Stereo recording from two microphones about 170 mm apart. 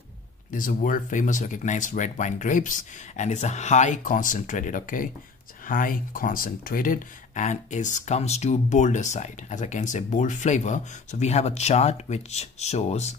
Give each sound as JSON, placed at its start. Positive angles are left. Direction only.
{"t": 0.5, "sound": "speech", "side_deg": 50}